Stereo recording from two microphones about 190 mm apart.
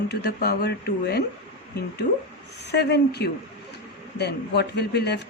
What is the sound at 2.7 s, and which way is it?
Speech, 60° left (ahead or behind).